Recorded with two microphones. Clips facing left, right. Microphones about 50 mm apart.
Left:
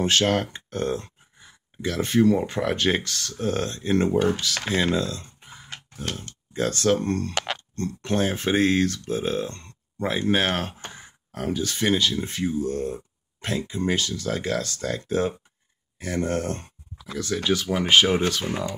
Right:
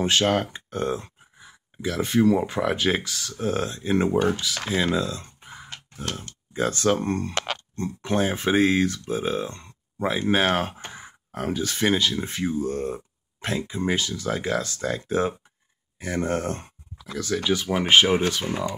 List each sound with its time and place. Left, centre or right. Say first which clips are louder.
0.0 s speech: even; centre
5.0 s speech: even; centre